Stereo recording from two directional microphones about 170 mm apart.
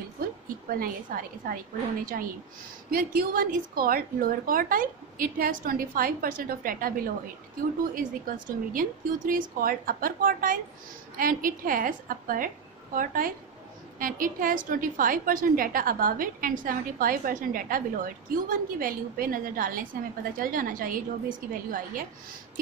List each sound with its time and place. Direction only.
0.7 s a woman's voice: 55° right (ahead or behind)